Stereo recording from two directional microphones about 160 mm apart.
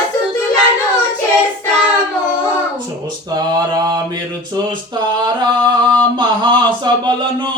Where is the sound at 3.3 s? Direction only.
25° right (ahead or behind).